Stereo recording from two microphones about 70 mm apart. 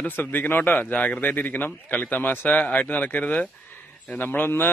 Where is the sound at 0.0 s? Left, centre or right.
Left.